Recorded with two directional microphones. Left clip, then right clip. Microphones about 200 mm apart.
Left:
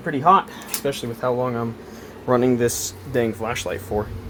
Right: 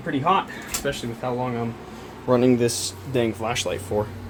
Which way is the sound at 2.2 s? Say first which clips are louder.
Left 1 dB; 10° left (ahead or behind).